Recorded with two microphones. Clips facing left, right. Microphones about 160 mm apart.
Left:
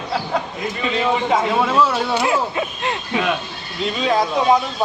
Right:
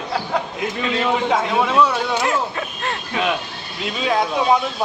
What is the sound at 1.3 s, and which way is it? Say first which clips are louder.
Speech: left 1 dB; centre (ahead or behind).